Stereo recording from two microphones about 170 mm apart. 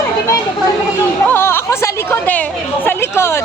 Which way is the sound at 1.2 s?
15° left (ahead or behind).